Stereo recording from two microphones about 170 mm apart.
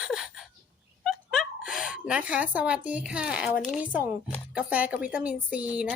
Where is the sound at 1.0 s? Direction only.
Centre (ahead or behind).